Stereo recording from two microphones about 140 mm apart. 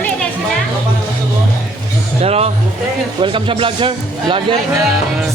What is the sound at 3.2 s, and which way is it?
A man's voice, 40° right (ahead or behind).